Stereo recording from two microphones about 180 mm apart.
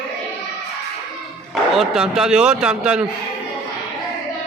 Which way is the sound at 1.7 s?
Centre (ahead or behind).